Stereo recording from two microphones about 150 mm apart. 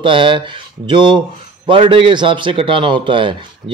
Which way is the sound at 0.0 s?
35° right (ahead or behind).